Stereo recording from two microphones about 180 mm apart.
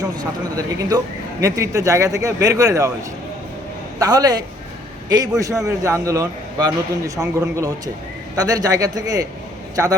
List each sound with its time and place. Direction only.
0.0 s a man's voice: 20° right (ahead or behind)
4.0 s a man's voice: 20° right (ahead or behind)